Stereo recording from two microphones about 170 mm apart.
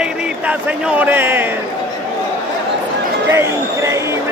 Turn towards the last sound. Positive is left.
turn(degrees=-15)  # may be behind; listen again after turning